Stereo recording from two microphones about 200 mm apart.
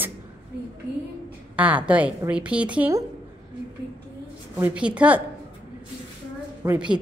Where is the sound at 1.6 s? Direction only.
5° right (ahead or behind).